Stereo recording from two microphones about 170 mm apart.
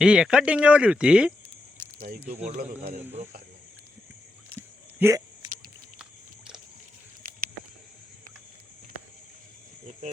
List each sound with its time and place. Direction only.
0.0 s speech: 5° right (ahead or behind)
2.0 s speech: 60° right (ahead or behind)
4.9 s a sound: 20° right (ahead or behind)